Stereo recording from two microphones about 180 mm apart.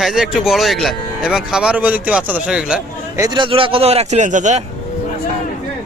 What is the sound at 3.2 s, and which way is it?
A man's voice, 25° right (ahead or behind).